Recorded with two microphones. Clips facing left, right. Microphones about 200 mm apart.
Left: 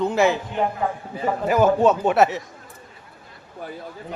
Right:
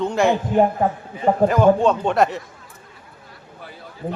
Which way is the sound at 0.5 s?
40° right (ahead or behind).